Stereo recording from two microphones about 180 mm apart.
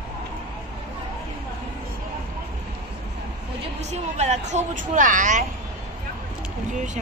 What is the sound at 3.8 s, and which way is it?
Speech, 40° right (ahead or behind).